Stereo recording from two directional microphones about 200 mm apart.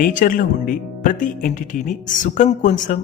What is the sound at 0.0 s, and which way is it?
Speech, 40° left (ahead or behind).